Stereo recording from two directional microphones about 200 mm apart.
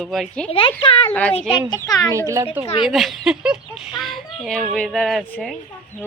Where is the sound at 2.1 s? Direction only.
15° right (ahead or behind).